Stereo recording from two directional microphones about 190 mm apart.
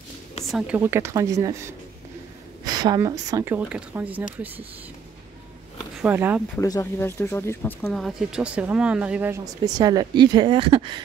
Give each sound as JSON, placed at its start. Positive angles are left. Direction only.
{"t": 0.5, "sound": "speech", "side_deg": -5}
{"t": 6.0, "sound": "speech", "side_deg": -10}
{"t": 6.5, "sound": "speech", "side_deg": 15}
{"t": 7.9, "sound": "speech", "side_deg": 0}